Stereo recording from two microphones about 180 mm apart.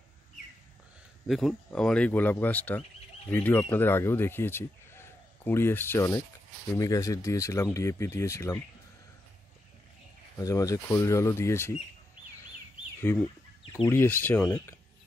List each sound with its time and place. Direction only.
1.2 s speech: centre (ahead or behind); by 8.5 s 15° left (ahead or behind)
10.4 s speech: 20° left (ahead or behind)
13.1 s speech: 15° left (ahead or behind)